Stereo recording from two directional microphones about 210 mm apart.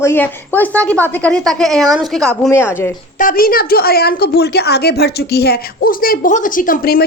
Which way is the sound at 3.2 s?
40° left (ahead or behind).